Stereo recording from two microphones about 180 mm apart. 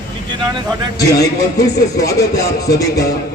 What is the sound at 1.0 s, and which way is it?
Speech, 20° left (ahead or behind).